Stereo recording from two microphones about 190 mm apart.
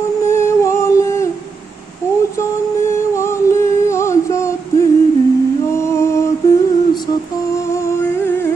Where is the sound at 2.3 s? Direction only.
15° left (ahead or behind).